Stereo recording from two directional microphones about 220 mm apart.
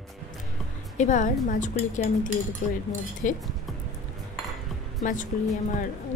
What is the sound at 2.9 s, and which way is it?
Speech, 35° left (ahead or behind).